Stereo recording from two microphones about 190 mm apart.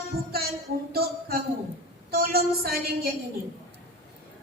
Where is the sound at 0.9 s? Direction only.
55° right (ahead or behind).